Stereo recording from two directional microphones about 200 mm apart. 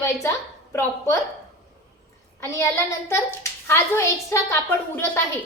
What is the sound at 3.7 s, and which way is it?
Speech, 10° left (ahead or behind).